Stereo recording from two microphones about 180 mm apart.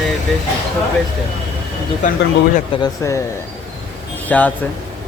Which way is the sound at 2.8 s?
15° left (ahead or behind).